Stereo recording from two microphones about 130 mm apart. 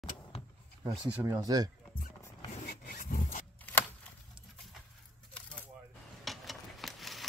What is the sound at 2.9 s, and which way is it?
Rub, 90° left.